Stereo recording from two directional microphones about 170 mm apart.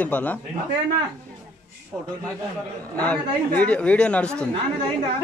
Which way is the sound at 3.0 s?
5° left (ahead or behind).